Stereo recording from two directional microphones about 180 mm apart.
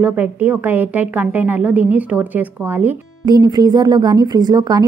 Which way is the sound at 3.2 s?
20° right (ahead or behind).